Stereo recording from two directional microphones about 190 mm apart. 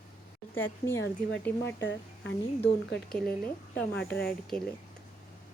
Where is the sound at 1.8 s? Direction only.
75° left (ahead or behind).